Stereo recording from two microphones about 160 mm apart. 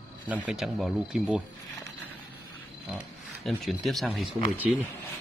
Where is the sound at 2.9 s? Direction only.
5° right (ahead or behind).